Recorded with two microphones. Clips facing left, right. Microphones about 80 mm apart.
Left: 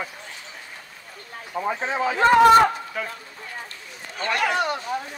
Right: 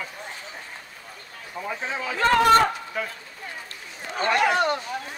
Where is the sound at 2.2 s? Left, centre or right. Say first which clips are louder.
Left 4 dB; centre.